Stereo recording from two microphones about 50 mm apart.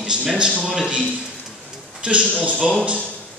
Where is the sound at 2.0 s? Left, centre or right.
Right.